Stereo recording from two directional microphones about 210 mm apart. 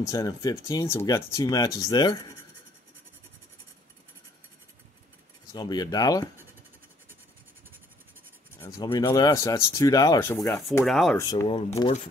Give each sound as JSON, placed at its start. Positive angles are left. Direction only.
{"t": 0.1, "sound": "speech", "side_deg": 15}
{"t": 5.5, "sound": "speech", "side_deg": 20}
{"t": 8.5, "sound": "speech", "side_deg": 15}
{"t": 10.9, "sound": "speech", "side_deg": 0}
{"t": 11.1, "sound": "speech", "side_deg": 15}